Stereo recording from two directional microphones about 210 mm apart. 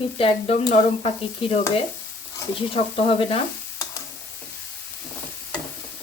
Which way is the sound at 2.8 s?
30° left (ahead or behind).